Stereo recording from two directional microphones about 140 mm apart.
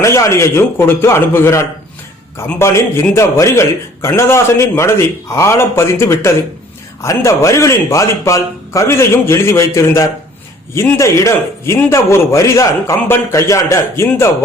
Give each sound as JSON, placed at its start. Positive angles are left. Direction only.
{"t": 0.0, "sound": "a man's voice", "side_deg": 20}